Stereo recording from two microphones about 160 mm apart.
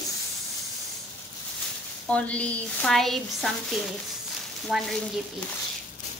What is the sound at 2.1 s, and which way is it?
Speech, 10° left (ahead or behind).